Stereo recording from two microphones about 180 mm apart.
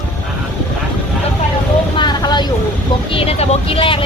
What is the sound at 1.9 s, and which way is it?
Vehicle, 25° left (ahead or behind).